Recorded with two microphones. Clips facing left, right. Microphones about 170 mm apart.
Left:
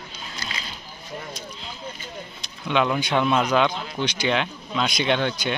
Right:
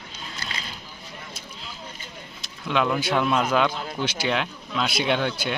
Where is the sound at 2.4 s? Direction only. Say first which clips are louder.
Left 1 dB; centre (ahead or behind).